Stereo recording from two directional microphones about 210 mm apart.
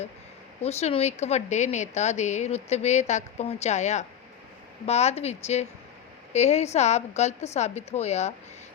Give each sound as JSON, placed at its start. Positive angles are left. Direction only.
{"t": 0.6, "sound": "a woman's voice", "side_deg": 30}